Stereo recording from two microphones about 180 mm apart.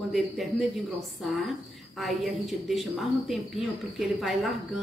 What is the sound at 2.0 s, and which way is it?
A woman's voice, centre (ahead or behind).